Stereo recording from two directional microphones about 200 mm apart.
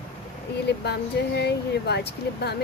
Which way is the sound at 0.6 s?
55° left (ahead or behind).